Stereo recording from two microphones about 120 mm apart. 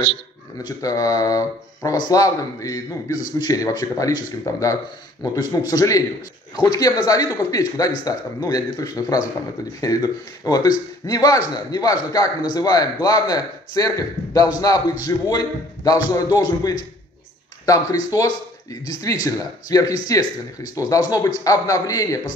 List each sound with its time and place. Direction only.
0.7 s speech: 30° left (ahead or behind)